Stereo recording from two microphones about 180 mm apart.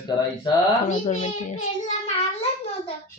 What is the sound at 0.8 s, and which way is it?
A child's voice, 40° left (ahead or behind).